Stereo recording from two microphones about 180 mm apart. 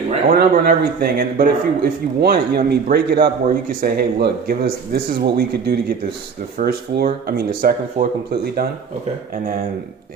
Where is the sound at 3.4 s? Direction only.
50° right (ahead or behind).